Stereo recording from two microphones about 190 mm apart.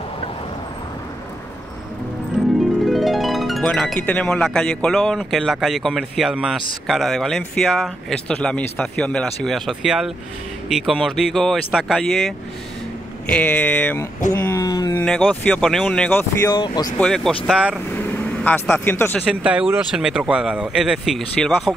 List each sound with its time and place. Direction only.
2.8 s speech: centre (ahead or behind)
14.3 s a sound: 15° left (ahead or behind)
15.0 s speech: 5° left (ahead or behind); by 16.9 s 20° left (ahead or behind)
16.9 s speech: 5° left (ahead or behind)
17.9 s vehicle: 10° left (ahead or behind)
19.2 s speech: 5° right (ahead or behind)